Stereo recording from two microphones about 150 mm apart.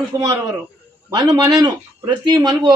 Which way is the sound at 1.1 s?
25° right (ahead or behind).